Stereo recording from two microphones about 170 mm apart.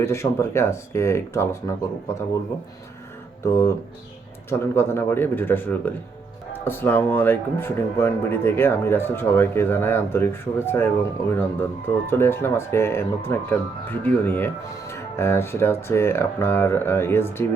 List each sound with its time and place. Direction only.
0.0 s speech: 15° left (ahead or behind)
3.4 s speech: 15° left (ahead or behind)